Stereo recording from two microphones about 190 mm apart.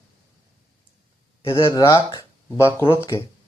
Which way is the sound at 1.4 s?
15° left (ahead or behind).